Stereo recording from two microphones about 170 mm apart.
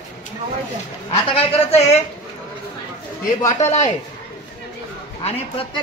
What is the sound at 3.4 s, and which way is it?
Speech, 45° left (ahead or behind).